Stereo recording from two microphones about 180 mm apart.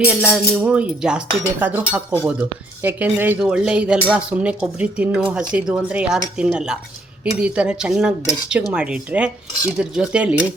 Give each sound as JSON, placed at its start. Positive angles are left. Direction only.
{"t": 0.0, "sound": "cutlery", "side_deg": -5}